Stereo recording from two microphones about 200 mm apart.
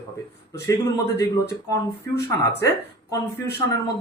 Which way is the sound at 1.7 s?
15° left (ahead or behind).